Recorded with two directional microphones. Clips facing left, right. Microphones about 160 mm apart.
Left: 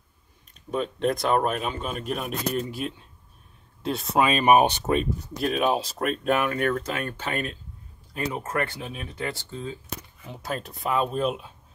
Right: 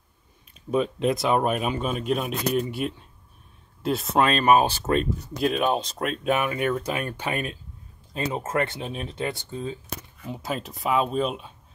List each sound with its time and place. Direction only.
0.7 s speech: 5° right (ahead or behind); by 4.9 s 20° left (ahead or behind)
4.9 s speech: centre (ahead or behind); by 9.8 s 20° right (ahead or behind)
10.3 s speech: centre (ahead or behind)